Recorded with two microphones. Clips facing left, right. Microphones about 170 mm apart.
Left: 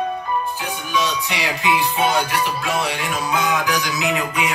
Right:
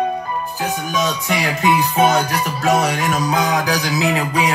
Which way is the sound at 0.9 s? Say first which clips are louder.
Even; 45° right (ahead or behind).